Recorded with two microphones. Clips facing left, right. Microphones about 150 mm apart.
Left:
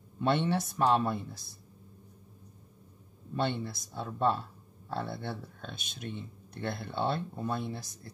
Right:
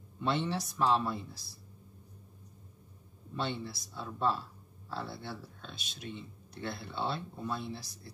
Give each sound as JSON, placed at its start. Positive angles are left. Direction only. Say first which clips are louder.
{"t": 0.5, "sound": "speech", "louder": "left 3 dB", "side_deg": 55}
{"t": 3.3, "sound": "speech", "louder": "left 4 dB", "side_deg": 50}